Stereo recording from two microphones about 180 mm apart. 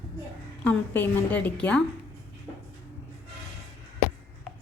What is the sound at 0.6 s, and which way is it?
A woman's voice, 10° left (ahead or behind).